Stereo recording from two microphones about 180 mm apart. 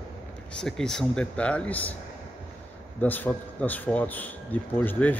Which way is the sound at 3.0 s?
10° left (ahead or behind).